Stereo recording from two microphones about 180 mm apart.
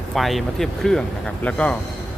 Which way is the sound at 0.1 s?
Centre (ahead or behind).